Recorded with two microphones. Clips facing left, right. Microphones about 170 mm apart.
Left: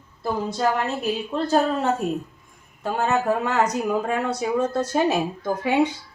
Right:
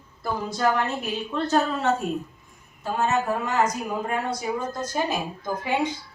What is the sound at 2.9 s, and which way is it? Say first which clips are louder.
A woman's voice: left 2 dB; 60° left (ahead or behind).